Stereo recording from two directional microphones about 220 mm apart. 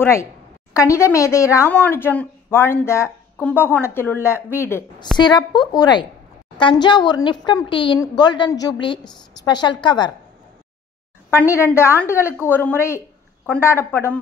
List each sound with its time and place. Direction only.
0.0 s a woman's voice: 10° left (ahead or behind)
11.2 s speech: 10° left (ahead or behind)